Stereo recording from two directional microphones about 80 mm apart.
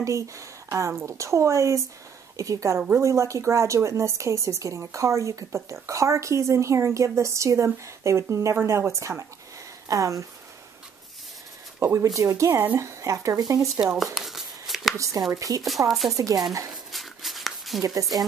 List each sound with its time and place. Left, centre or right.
0.0 s a woman's voice: right
11.8 s a woman's voice: right
13.9 s a sound: centre
15.0 s a woman's voice: right
15.9 s speech: centre
16.2 s a woman's voice: right
16.9 s a sound: centre